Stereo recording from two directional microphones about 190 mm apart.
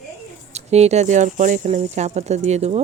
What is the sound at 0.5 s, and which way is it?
Speech, 35° right (ahead or behind).